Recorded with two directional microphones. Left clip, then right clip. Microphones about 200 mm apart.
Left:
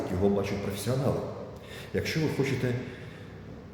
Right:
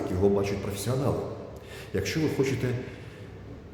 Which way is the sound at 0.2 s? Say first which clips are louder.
Right 3 dB; 20° right (ahead or behind).